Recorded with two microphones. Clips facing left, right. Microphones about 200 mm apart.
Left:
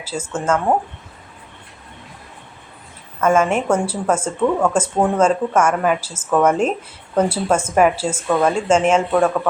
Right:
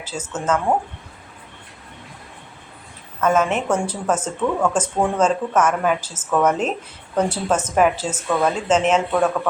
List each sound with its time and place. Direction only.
0.0 s a woman's voice: 10° left (ahead or behind)
3.2 s a woman's voice: 10° left (ahead or behind)